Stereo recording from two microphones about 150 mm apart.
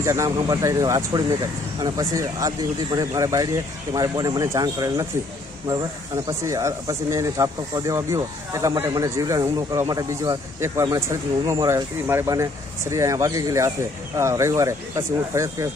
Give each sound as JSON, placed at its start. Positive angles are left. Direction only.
{"t": 0.0, "sound": "speech", "side_deg": -20}